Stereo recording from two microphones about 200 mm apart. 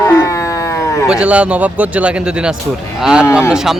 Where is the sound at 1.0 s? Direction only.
5° right (ahead or behind).